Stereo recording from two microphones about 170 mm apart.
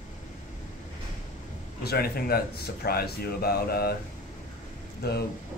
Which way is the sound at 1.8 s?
65° left (ahead or behind).